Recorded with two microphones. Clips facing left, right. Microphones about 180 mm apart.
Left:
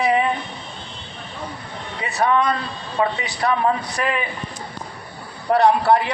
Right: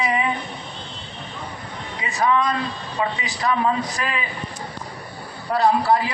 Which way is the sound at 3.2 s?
65° left (ahead or behind).